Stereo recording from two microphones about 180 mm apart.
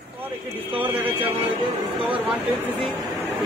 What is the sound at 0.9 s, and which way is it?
Speech, 10° right (ahead or behind).